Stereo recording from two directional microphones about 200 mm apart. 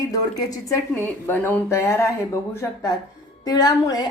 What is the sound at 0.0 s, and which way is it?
A woman's voice, 20° left (ahead or behind).